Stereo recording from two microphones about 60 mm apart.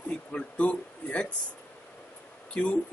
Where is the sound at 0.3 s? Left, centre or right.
Centre.